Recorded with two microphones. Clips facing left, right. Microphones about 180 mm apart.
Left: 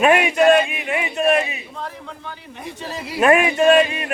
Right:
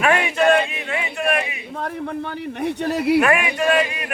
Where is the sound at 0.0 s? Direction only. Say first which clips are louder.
Left 3 dB; 15° left (ahead or behind).